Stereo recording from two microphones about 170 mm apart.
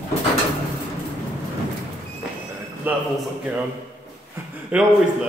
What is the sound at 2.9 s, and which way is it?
Speech, 10° right (ahead or behind).